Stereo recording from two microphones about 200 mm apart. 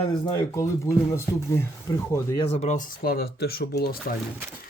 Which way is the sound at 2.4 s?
30° left (ahead or behind).